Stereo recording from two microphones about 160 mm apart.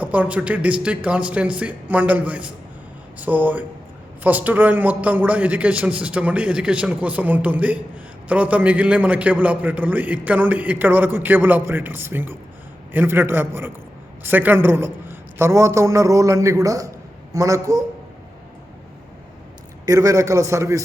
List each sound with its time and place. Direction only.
0.0 s a man's voice: 10° right (ahead or behind)
19.8 s a man's voice: 20° right (ahead or behind)